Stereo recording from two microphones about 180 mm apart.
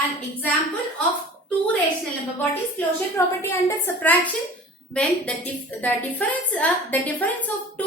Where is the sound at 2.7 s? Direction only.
15° left (ahead or behind).